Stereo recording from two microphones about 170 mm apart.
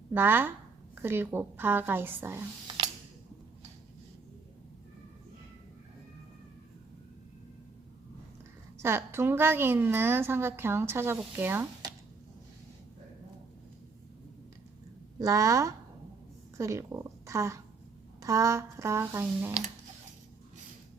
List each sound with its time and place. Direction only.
0.1 s a woman's voice: 10° right (ahead or behind)
8.8 s a woman's voice: 15° right (ahead or behind)
15.2 s a woman's voice: 20° right (ahead or behind)